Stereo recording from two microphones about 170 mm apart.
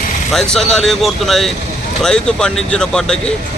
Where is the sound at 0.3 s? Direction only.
Centre (ahead or behind).